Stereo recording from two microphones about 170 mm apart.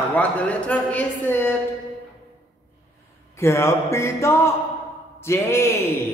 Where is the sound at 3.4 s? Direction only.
15° left (ahead or behind).